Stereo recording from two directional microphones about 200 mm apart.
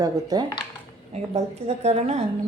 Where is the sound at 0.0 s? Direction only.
20° right (ahead or behind).